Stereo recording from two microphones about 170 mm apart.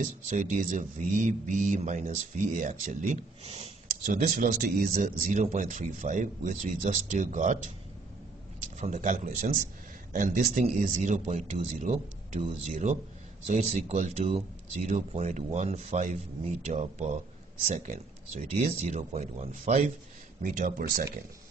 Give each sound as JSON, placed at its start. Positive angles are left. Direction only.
{"t": 0.0, "sound": "speech", "side_deg": -50}
{"t": 8.7, "sound": "speech", "side_deg": -45}